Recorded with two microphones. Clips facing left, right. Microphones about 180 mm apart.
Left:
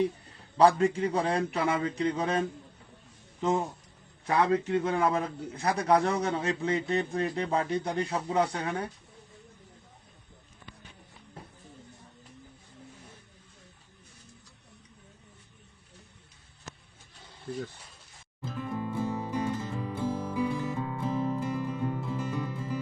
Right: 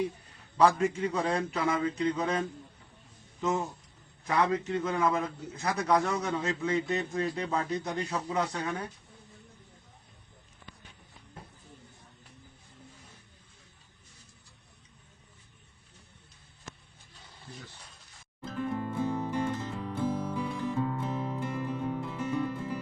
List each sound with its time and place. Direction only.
0.5 s a man's voice: 35° left (ahead or behind)
18.5 s music: 5° left (ahead or behind)